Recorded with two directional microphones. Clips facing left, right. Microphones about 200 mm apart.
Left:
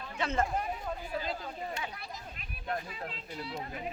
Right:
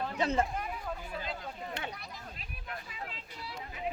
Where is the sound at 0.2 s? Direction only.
35° right (ahead or behind).